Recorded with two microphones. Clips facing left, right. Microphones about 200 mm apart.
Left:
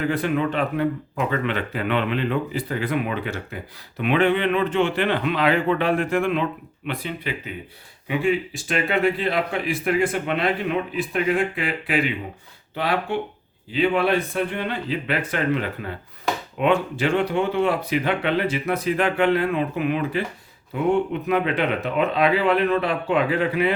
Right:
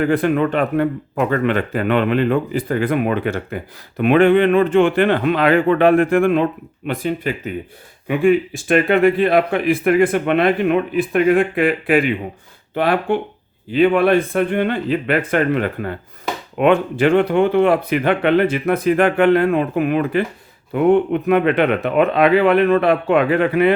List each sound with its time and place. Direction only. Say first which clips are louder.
0.0 s speech: right 6 dB; 55° right (ahead or behind)